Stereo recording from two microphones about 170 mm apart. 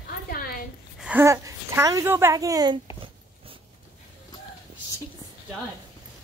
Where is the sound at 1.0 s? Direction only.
10° right (ahead or behind).